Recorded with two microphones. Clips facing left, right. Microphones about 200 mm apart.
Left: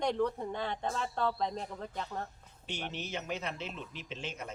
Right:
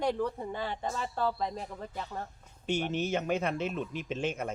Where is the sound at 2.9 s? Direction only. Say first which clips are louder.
Right 6 dB; 50° right (ahead or behind).